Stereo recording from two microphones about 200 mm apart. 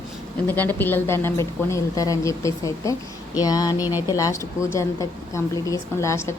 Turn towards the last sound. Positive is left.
turn(degrees=15)  # may be behind; listen again after turning